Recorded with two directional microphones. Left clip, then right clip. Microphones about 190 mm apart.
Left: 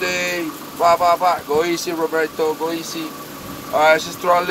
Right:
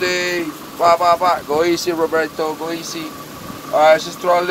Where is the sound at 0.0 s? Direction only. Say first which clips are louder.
Right 2 dB; 40° right (ahead or behind).